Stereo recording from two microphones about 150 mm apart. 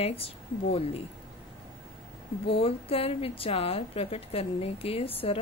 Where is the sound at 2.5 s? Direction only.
40° left (ahead or behind).